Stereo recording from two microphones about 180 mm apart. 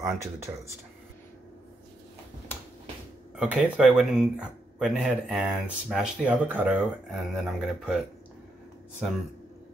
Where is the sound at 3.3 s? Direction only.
5° right (ahead or behind).